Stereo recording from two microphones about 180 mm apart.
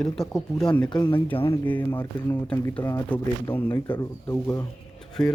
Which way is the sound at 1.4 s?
10° left (ahead or behind).